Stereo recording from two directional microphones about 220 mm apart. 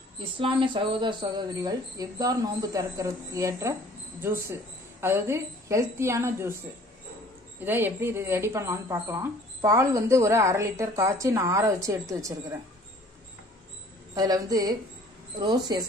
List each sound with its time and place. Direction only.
0.4 s speech: 20° right (ahead or behind)
7.6 s speech: 10° right (ahead or behind)
14.1 s speech: 15° right (ahead or behind)